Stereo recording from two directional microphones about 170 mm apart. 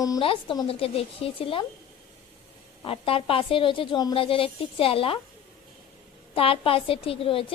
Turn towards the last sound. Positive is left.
turn(degrees=30)  # may be behind; listen again after turning